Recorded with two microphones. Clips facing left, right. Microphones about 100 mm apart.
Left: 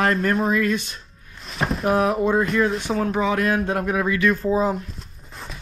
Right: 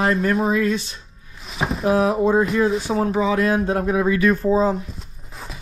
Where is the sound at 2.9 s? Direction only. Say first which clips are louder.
Right 2 dB; 35° right (ahead or behind).